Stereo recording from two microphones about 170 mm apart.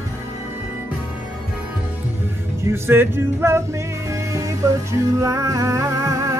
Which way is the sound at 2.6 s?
15° right (ahead or behind).